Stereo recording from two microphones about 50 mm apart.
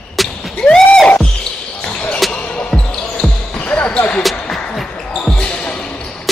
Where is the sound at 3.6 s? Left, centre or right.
Left.